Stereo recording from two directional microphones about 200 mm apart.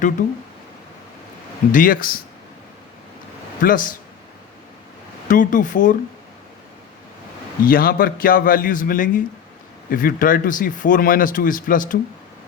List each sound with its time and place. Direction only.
1.7 s speech: 45° left (ahead or behind)
3.6 s speech: 45° left (ahead or behind)
5.3 s speech: 40° left (ahead or behind)
7.6 s speech: 45° left (ahead or behind)